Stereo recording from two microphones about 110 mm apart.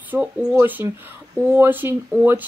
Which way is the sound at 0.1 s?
10° right (ahead or behind).